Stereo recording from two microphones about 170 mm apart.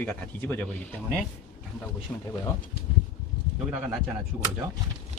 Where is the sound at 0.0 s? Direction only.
10° left (ahead or behind).